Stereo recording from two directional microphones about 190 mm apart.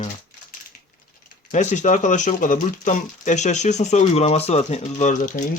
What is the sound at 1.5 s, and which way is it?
Speech, 40° left (ahead or behind).